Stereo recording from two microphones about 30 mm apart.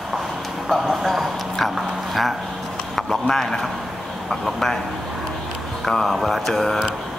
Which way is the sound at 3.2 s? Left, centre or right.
Centre.